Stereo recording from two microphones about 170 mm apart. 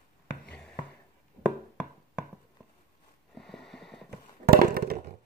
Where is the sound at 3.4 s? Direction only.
Centre (ahead or behind).